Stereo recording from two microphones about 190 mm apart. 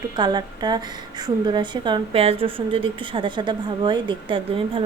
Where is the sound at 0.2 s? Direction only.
20° right (ahead or behind).